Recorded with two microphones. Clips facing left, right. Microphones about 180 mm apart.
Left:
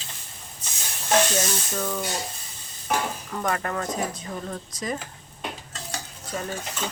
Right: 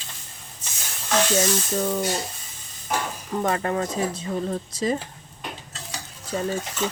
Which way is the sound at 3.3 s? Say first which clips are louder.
Right 5 dB; 25° right (ahead or behind).